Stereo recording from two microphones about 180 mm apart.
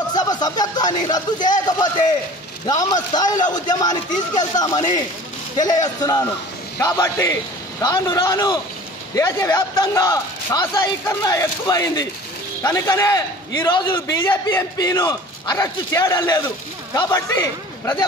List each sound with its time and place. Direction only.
0.1 s a man's voice: 20° left (ahead or behind)